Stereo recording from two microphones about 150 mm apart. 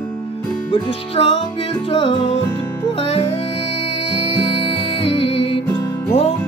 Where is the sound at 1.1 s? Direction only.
40° left (ahead or behind).